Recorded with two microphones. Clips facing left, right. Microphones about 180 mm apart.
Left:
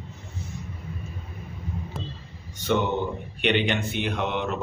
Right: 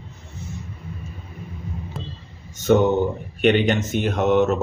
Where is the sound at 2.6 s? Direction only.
45° right (ahead or behind).